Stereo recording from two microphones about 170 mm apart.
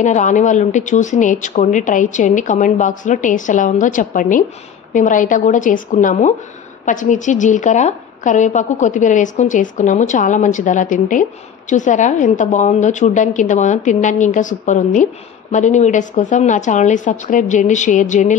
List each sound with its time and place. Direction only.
0.0 s a woman's voice: 45° left (ahead or behind)